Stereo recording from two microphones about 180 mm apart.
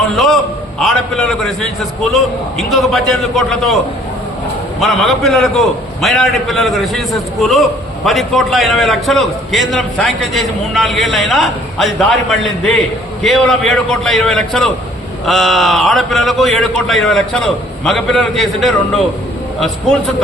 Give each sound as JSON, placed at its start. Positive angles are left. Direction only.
{"t": 0.8, "sound": "a man's voice", "side_deg": 0}
{"t": 4.8, "sound": "a man's voice", "side_deg": 0}